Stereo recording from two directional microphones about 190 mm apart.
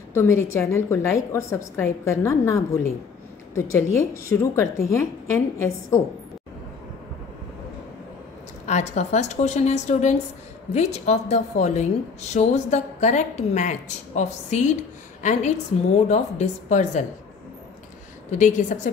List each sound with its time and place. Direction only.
0.1 s a woman's voice: 15° left (ahead or behind)
8.6 s a woman's voice: 40° left (ahead or behind)